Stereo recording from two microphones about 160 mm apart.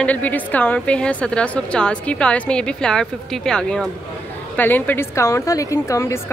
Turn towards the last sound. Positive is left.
turn(degrees=20)  # may be behind; listen again after turning